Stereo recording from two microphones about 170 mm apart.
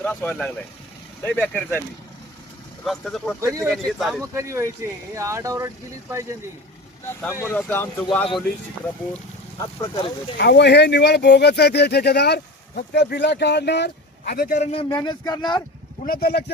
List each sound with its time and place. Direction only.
0.0 s speech: 10° left (ahead or behind)
2.8 s speech: centre (ahead or behind)
3.4 s speech: 15° right (ahead or behind)
3.7 s speech: centre (ahead or behind)
4.2 s speech: 15° right (ahead or behind)
7.2 s speech: 15° left (ahead or behind)
9.6 s speech: 20° left (ahead or behind)
10.3 s speech: 80° left; by 14.6 s 65° left (ahead or behind)
14.6 s speech: 35° left (ahead or behind)
16.0 s speech: 65° left (ahead or behind)